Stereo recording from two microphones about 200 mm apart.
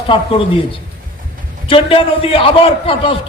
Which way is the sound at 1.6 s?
25° left (ahead or behind).